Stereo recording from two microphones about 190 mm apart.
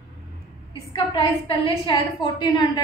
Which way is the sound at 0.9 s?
25° left (ahead or behind).